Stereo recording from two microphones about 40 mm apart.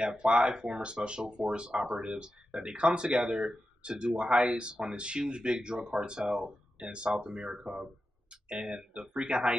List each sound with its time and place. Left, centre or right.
0.0 s speech: right